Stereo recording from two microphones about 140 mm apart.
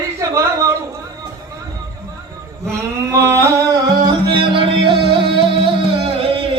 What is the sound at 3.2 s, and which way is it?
Music, 20° right (ahead or behind).